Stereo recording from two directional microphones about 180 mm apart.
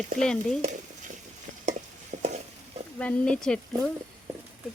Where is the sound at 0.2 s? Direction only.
5° left (ahead or behind).